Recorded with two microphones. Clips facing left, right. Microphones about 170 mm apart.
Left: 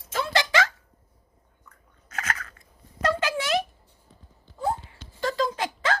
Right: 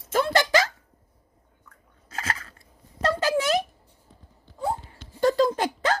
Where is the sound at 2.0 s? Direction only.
30° right (ahead or behind).